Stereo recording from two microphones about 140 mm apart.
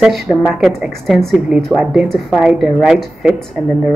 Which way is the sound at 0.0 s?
Centre (ahead or behind).